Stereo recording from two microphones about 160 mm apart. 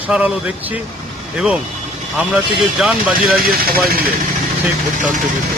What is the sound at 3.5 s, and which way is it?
Speech, 70° right (ahead or behind).